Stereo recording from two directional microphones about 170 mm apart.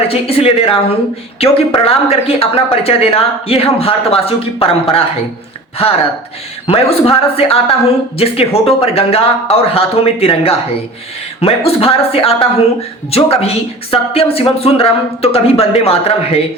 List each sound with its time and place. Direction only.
0.1 s a woman's voice: 35° left (ahead or behind)
6.7 s a woman's voice: 35° left (ahead or behind)